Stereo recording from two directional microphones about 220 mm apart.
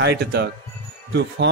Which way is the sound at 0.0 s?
50° right (ahead or behind).